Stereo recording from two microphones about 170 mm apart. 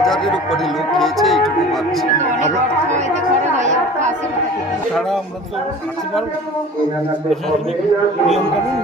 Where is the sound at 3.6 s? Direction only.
45° right (ahead or behind).